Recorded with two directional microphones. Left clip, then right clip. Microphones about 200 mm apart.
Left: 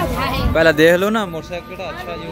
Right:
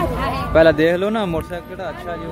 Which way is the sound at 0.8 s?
5° left (ahead or behind).